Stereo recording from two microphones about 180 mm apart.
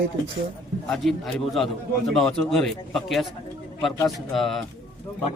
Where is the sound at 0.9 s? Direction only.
Centre (ahead or behind).